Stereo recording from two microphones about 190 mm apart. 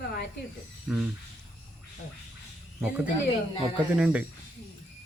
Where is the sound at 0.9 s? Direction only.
5° right (ahead or behind).